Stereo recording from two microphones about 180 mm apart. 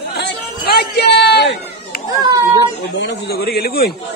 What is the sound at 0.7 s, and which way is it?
Speech, 65° left (ahead or behind).